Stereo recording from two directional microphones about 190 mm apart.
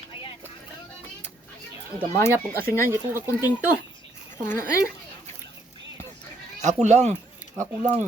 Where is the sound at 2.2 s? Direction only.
15° left (ahead or behind).